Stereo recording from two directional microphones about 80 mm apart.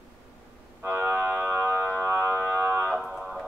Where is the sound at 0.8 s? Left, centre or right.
Right.